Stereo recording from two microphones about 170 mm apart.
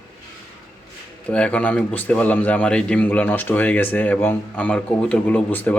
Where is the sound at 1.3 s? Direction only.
5° left (ahead or behind).